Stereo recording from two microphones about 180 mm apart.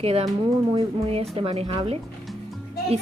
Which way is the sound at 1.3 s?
35° right (ahead or behind).